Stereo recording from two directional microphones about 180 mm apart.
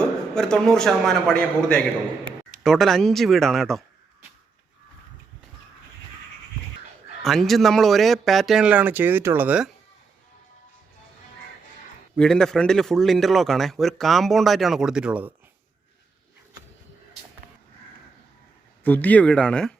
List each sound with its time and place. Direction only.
0.0 s a man's voice: 5° left (ahead or behind)
7.2 s a man's voice: centre (ahead or behind)
12.1 s a man's voice: 5° left (ahead or behind)
18.8 s speech: 10° left (ahead or behind)